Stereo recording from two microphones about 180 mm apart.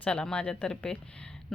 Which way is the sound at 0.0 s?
5° left (ahead or behind).